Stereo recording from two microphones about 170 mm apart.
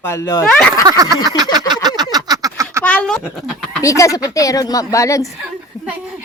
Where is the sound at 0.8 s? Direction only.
20° right (ahead or behind).